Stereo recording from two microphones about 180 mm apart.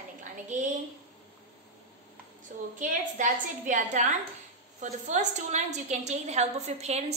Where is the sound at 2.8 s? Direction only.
45° right (ahead or behind).